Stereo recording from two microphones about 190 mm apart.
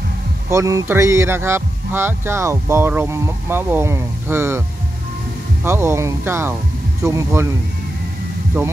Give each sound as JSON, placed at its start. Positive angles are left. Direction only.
{"t": 0.5, "sound": "speech", "side_deg": -15}